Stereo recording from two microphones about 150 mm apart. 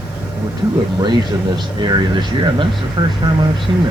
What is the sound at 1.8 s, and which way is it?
Speech, 30° right (ahead or behind).